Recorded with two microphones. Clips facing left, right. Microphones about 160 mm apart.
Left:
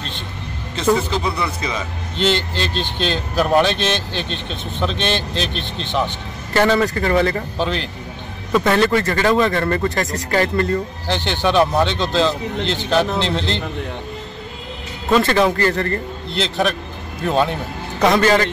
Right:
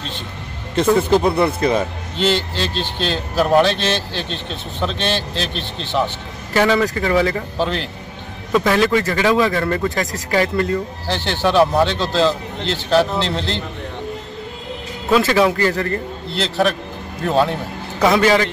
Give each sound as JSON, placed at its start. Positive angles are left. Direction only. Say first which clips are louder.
{"t": 0.9, "sound": "speech", "louder": "right 6 dB", "side_deg": -55}
{"t": 2.1, "sound": "speech", "louder": "even", "side_deg": -5}
{"t": 15.0, "sound": "a man's voice", "louder": "right 1 dB", "side_deg": -5}